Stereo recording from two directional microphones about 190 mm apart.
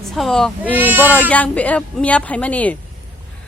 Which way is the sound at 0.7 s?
10° right (ahead or behind).